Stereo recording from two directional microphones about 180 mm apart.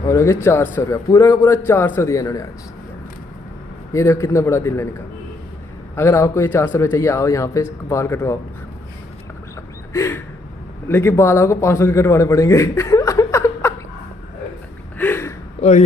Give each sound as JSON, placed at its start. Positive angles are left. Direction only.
{"t": 0.0, "sound": "speech", "side_deg": 15}
{"t": 3.9, "sound": "speech", "side_deg": 15}
{"t": 5.9, "sound": "speech", "side_deg": 15}
{"t": 9.9, "sound": "a man's voice", "side_deg": 15}
{"t": 15.0, "sound": "a sound", "side_deg": 10}
{"t": 15.6, "sound": "a sound", "side_deg": 30}